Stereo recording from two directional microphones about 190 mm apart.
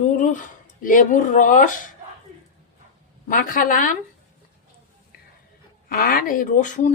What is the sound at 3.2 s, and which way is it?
Speech, 45° left (ahead or behind).